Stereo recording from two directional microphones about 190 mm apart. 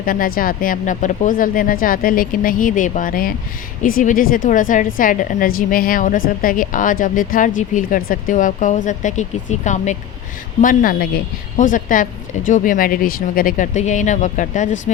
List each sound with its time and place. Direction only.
0.0 s a woman's voice: 50° left (ahead or behind)